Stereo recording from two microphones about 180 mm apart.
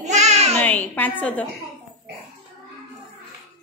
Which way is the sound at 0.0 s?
40° right (ahead or behind).